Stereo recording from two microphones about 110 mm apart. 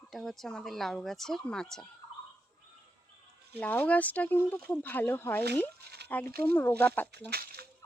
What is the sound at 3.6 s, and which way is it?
Speech, 15° left (ahead or behind).